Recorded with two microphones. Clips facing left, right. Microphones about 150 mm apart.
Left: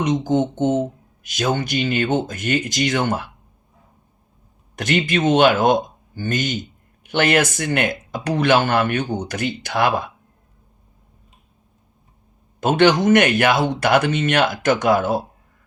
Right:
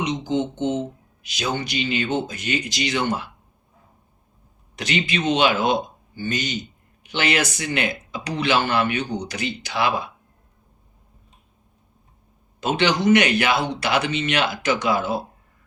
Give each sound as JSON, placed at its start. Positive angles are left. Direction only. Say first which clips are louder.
{"t": 0.0, "sound": "speech", "louder": "left 5 dB", "side_deg": 50}
{"t": 4.8, "sound": "speech", "louder": "left 5 dB", "side_deg": 50}
{"t": 12.5, "sound": "speech", "louder": "left 6 dB", "side_deg": 50}